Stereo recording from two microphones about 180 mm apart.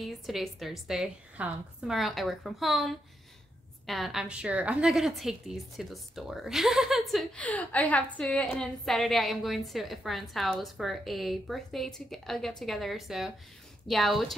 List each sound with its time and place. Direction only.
0.0 s a woman's voice: centre (ahead or behind)